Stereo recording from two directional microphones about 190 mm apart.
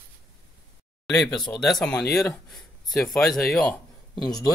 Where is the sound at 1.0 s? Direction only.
Centre (ahead or behind).